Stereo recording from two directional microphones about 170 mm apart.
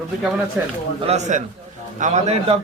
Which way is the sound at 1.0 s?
40° right (ahead or behind).